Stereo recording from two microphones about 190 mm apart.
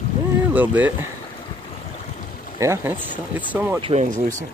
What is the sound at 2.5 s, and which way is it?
Speech, 15° right (ahead or behind).